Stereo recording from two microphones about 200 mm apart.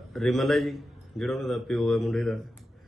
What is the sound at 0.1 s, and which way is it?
Speech, centre (ahead or behind).